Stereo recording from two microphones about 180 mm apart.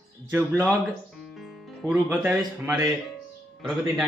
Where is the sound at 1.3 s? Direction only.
Centre (ahead or behind).